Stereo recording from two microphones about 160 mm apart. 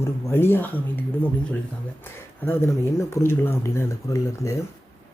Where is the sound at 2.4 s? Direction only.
15° left (ahead or behind).